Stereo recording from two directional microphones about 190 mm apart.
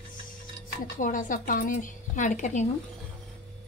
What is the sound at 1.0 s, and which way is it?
A woman's voice, 45° left (ahead or behind).